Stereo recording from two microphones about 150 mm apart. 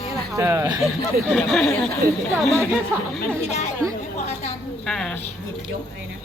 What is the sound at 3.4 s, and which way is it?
Speech, 50° left (ahead or behind).